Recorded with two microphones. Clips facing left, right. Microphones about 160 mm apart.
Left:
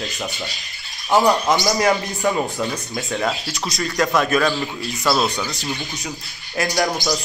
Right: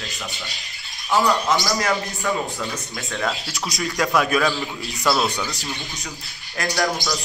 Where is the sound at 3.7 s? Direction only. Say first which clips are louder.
Left 1 dB; 5° right (ahead or behind).